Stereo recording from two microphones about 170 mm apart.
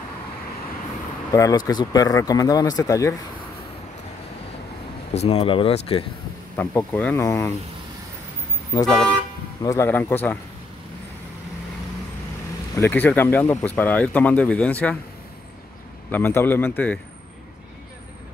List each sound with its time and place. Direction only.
1.3 s speech: 20° left (ahead or behind)
5.1 s speech: 40° left (ahead or behind)
6.5 s speech: 10° left (ahead or behind)
8.8 s speech: centre (ahead or behind)
9.6 s speech: 15° left (ahead or behind)
12.7 s speech: 10° left (ahead or behind)
16.1 s speech: 10° left (ahead or behind)